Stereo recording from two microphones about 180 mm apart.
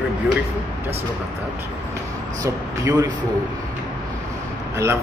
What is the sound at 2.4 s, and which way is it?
Speech, 20° right (ahead or behind).